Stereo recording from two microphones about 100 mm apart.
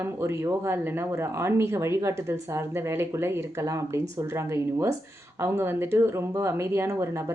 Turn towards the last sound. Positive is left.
turn(degrees=-25)  # may be behind; listen again after turning